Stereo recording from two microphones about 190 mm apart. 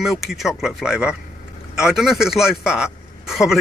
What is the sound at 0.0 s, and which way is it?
A man's voice, centre (ahead or behind).